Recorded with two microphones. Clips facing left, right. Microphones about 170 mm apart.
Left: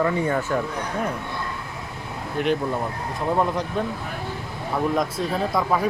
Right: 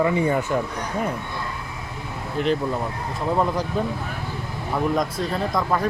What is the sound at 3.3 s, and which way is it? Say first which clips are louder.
Speech: right 1 dB; centre (ahead or behind).